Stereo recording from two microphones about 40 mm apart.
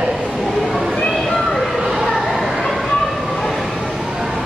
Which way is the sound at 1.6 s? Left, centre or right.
Centre.